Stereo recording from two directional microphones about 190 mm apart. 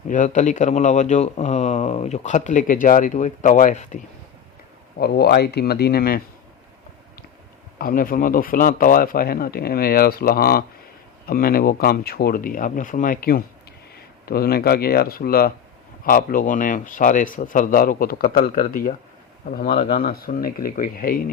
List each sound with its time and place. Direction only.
0.1 s speech: 40° left (ahead or behind)
4.9 s speech: 55° left (ahead or behind)
7.8 s speech: 50° left (ahead or behind)
19.6 s speech: 30° left (ahead or behind)
20.0 s speech: 50° left (ahead or behind)